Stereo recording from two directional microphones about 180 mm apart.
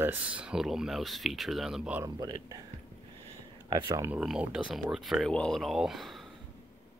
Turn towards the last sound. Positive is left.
turn(degrees=0)  # may be behind; listen again after turning